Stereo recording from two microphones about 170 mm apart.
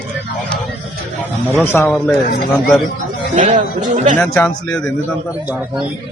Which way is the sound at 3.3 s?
50° right (ahead or behind).